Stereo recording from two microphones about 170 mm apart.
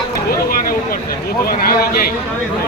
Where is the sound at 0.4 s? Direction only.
60° left (ahead or behind).